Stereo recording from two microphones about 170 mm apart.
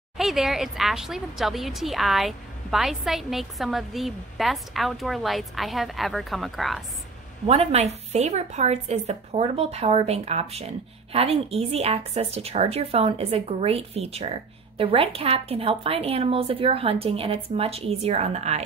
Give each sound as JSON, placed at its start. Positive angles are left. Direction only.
{"t": 0.2, "sound": "speech", "side_deg": 0}
{"t": 7.4, "sound": "a woman's voice", "side_deg": -35}